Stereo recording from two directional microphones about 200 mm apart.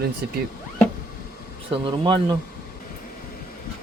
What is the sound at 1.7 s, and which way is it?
Speech, 25° right (ahead or behind).